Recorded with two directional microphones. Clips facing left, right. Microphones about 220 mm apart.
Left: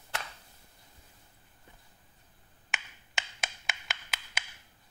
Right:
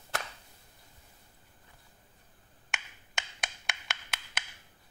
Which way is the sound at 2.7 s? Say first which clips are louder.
Even; centre (ahead or behind).